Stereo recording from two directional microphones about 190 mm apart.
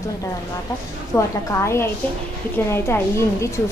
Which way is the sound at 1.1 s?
15° left (ahead or behind).